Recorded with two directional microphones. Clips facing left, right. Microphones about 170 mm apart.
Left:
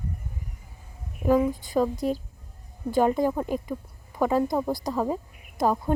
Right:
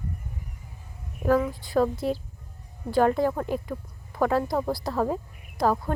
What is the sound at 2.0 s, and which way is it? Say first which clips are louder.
Speech: left 1 dB; 45° left (ahead or behind).